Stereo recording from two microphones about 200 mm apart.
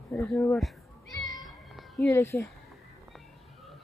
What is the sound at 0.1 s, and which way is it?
Speech, 10° left (ahead or behind).